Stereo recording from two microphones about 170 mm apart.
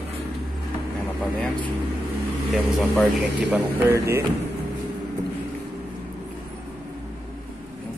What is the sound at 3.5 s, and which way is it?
Speech, 15° right (ahead or behind).